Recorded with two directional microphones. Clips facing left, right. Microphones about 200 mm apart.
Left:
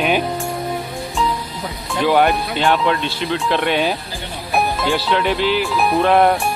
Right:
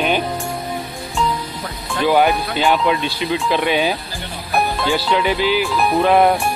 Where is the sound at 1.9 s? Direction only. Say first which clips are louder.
Even; 5° right (ahead or behind).